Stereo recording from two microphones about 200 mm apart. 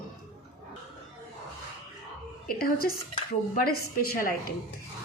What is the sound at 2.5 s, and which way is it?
A woman's voice, 50° left (ahead or behind).